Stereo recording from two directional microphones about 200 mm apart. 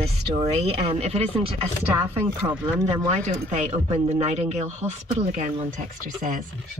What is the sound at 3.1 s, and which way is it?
Speech, 35° right (ahead or behind).